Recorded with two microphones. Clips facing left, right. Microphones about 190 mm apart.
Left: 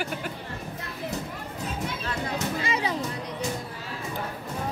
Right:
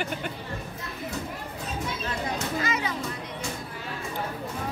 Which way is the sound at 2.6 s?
30° left (ahead or behind).